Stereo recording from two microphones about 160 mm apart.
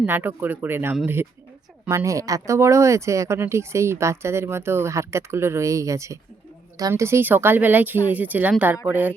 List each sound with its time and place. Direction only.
0.0 s speech: 10° right (ahead or behind)